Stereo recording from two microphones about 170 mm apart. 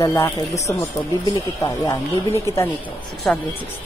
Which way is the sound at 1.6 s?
20° left (ahead or behind).